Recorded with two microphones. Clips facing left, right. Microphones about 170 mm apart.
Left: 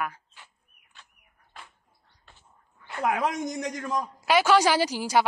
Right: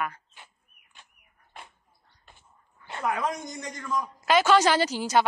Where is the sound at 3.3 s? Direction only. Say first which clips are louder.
Left 4 dB; 85° left.